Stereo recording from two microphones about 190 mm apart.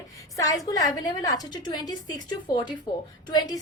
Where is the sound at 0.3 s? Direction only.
20° left (ahead or behind).